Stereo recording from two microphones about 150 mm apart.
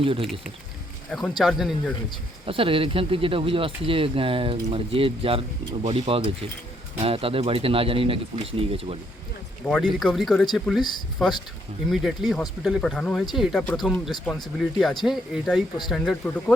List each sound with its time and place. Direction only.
0.0 s speech: 40° right (ahead or behind)
1.4 s speech: centre (ahead or behind)
2.5 s speech: 35° right (ahead or behind)
9.6 s speech: centre (ahead or behind)
16.2 s speech: 10° left (ahead or behind)